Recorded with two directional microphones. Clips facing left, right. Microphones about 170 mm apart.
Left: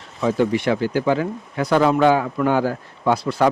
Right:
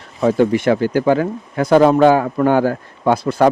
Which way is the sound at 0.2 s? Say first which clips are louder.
Right 5 dB; 50° right (ahead or behind).